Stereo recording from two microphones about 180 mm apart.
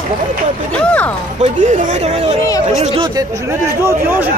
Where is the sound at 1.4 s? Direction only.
45° right (ahead or behind).